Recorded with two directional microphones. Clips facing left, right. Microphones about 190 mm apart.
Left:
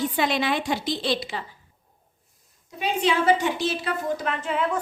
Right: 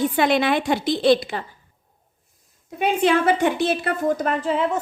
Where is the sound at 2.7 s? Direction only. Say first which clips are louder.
Right 5 dB; 55° right (ahead or behind); by 4.8 s 25° right (ahead or behind).